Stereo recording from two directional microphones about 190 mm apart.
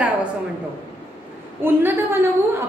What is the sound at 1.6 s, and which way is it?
Speech, 10° right (ahead or behind).